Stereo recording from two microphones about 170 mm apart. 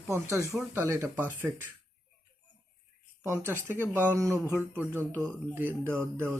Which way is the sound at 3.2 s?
15° right (ahead or behind).